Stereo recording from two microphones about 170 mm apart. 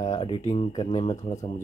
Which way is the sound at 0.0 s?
30° left (ahead or behind).